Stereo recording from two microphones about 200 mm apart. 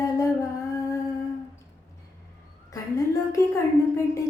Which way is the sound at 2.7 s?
15° left (ahead or behind).